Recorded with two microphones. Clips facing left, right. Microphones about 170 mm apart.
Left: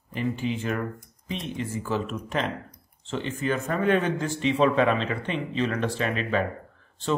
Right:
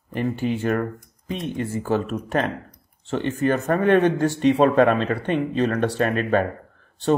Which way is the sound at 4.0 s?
60° right (ahead or behind).